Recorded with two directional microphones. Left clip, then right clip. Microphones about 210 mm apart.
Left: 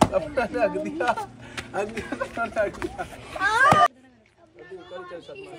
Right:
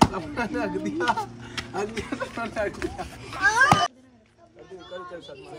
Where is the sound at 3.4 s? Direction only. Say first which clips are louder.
Right 1 dB; 45° left (ahead or behind).